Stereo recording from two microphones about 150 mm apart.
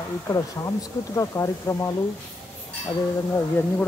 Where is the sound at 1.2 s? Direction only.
20° left (ahead or behind).